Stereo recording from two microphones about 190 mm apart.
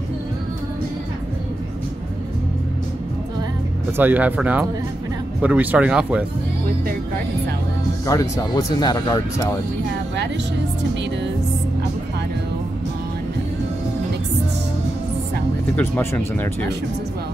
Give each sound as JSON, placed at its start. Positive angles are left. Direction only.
{"t": 3.9, "sound": "speech", "side_deg": -10}
{"t": 8.1, "sound": "speech", "side_deg": 20}
{"t": 15.7, "sound": "speech", "side_deg": 10}